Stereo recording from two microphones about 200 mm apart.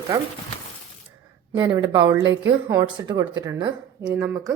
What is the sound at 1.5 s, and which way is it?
A woman's voice, 15° right (ahead or behind).